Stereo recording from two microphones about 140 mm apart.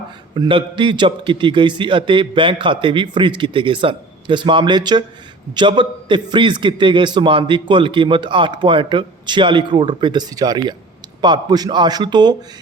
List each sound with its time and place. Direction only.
0.3 s a man's voice: 35° right (ahead or behind)